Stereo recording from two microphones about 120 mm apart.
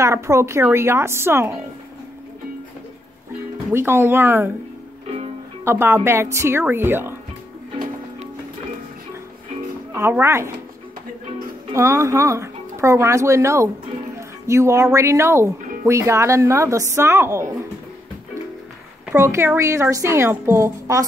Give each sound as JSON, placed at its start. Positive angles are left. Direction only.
{"t": 0.0, "sound": "speech", "side_deg": -25}
{"t": 3.7, "sound": "speech", "side_deg": -20}
{"t": 5.6, "sound": "speech", "side_deg": -20}
{"t": 9.9, "sound": "speech", "side_deg": -20}
{"t": 11.7, "sound": "speech", "side_deg": -25}
{"t": 19.1, "sound": "speech", "side_deg": -20}